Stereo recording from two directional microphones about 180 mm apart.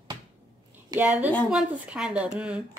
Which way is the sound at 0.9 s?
10° right (ahead or behind).